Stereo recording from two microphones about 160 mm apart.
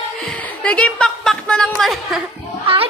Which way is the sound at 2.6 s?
35° right (ahead or behind).